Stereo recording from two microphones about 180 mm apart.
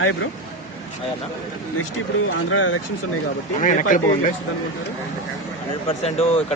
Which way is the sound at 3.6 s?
45° left (ahead or behind).